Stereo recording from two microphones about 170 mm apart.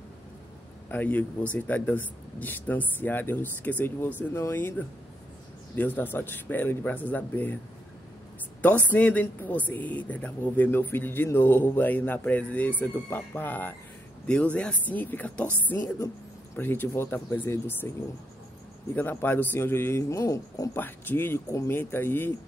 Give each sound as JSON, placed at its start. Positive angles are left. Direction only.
{"t": 0.8, "sound": "speech", "side_deg": 10}
{"t": 8.9, "sound": "speech", "side_deg": 10}
{"t": 18.9, "sound": "speech", "side_deg": 10}